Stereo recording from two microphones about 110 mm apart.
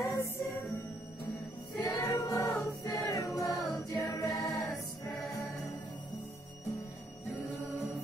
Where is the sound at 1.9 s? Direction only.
30° left (ahead or behind).